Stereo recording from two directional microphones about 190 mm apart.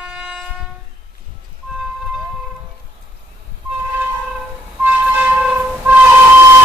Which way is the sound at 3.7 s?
5° right (ahead or behind).